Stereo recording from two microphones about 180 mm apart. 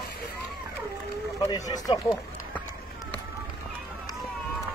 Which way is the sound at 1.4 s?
20° left (ahead or behind).